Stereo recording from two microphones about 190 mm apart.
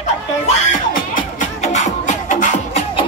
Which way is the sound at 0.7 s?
40° left (ahead or behind).